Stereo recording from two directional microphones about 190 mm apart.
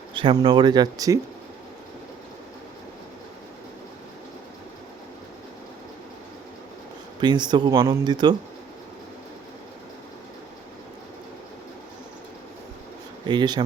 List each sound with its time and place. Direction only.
0.1 s speech: 25° right (ahead or behind)
7.2 s speech: 25° right (ahead or behind)
13.2 s speech: 25° right (ahead or behind)